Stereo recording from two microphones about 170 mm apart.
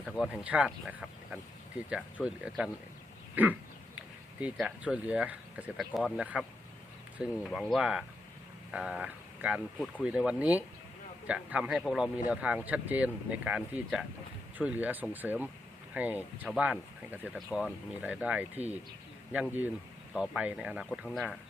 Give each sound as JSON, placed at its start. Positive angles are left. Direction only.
{"t": 0.0, "sound": "speech", "side_deg": -5}
{"t": 20.1, "sound": "speech", "side_deg": -5}